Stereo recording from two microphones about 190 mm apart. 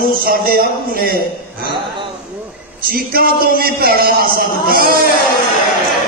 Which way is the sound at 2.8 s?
50° right (ahead or behind).